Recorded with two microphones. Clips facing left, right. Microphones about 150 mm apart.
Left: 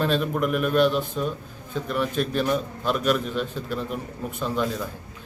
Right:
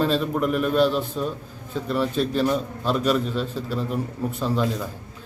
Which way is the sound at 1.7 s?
30° right (ahead or behind).